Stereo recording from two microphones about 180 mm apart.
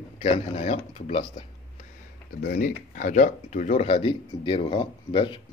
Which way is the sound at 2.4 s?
50° left (ahead or behind).